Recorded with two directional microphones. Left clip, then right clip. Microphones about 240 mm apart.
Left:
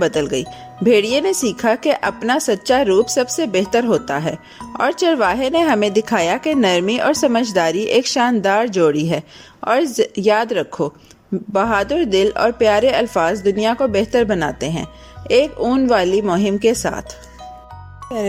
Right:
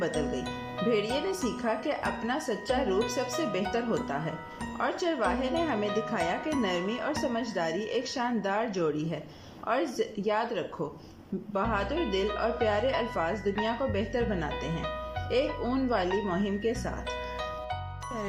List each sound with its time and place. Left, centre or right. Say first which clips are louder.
0.0 s speech: left 13 dB; left
18.1 s speech: left 14 dB; left